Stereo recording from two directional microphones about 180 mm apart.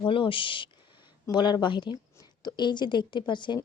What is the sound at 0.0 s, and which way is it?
Speech, 30° left (ahead or behind).